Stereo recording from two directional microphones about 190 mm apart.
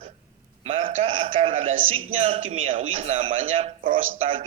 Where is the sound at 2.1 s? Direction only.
30° right (ahead or behind).